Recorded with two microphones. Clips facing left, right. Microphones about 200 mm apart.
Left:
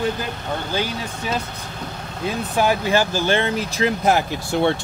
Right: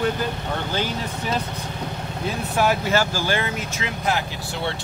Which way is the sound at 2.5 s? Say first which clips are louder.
Left 2 dB; 15° left (ahead or behind).